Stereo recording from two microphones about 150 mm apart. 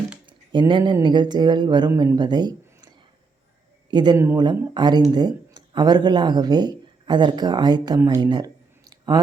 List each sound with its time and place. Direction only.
0.7 s speech: 30° right (ahead or behind)
1.9 s speech: 15° right (ahead or behind)
2.1 s speech: 30° right (ahead or behind)
3.9 s speech: 30° right (ahead or behind)